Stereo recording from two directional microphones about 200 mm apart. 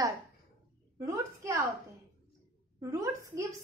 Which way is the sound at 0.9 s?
15° right (ahead or behind).